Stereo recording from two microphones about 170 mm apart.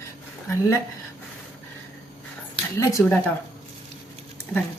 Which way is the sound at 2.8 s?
15° left (ahead or behind).